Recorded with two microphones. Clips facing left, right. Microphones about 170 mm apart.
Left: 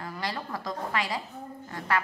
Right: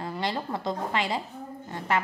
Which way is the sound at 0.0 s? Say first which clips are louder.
Right 4 dB; 25° right (ahead or behind).